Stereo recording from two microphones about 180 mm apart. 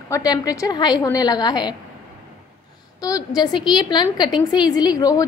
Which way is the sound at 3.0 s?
20° left (ahead or behind).